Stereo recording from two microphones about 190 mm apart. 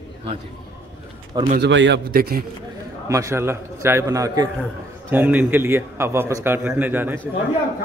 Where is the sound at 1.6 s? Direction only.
70° right (ahead or behind).